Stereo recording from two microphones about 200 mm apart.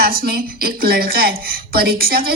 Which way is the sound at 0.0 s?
50° right (ahead or behind).